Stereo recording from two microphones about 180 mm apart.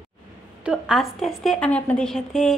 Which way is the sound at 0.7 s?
5° right (ahead or behind).